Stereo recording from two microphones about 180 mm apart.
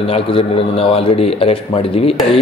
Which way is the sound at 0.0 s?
30° left (ahead or behind).